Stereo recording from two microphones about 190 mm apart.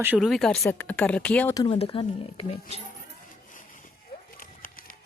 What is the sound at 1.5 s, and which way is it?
Speech, 30° left (ahead or behind).